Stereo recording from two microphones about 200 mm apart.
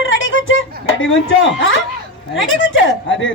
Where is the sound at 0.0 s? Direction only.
70° left (ahead or behind).